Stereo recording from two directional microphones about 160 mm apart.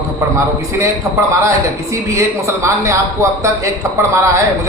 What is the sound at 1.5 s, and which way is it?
A man's voice, 20° right (ahead or behind).